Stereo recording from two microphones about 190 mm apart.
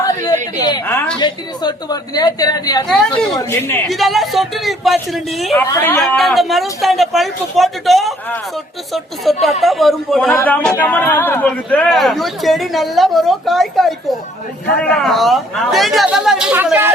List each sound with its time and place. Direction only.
0.6 s a sound: 15° left (ahead or behind)
1.2 s a woman's voice: 20° left (ahead or behind)
2.8 s a man's voice: 5° left (ahead or behind)
3.8 s a man's voice: centre (ahead or behind)
5.6 s a man's voice: 15° left (ahead or behind)
6.0 s a man's voice: centre (ahead or behind)